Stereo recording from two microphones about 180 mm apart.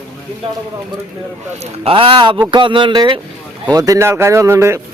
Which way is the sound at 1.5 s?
35° right (ahead or behind).